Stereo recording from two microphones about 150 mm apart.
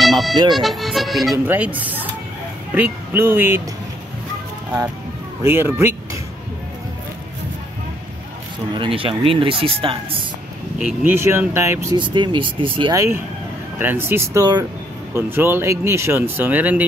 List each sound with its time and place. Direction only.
0.0 s music: centre (ahead or behind)
0.6 s speech: centre (ahead or behind)
1.5 s speech: 10° right (ahead or behind)
5.4 s speech: 15° right (ahead or behind)
8.7 s speech: 35° right (ahead or behind)
10.8 s speech: 10° right (ahead or behind)
12.0 s speech: 30° right (ahead or behind)
12.9 s speech: 15° right (ahead or behind)